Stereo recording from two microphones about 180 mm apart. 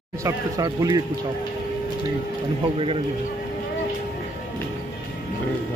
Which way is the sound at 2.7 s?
30° right (ahead or behind).